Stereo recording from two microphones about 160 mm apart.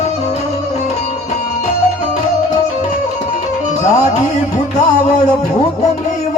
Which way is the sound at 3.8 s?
45° left (ahead or behind).